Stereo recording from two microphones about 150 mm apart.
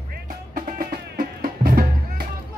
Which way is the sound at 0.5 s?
75° right (ahead or behind).